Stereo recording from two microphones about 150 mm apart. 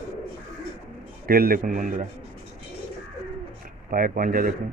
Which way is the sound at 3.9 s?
70° right (ahead or behind).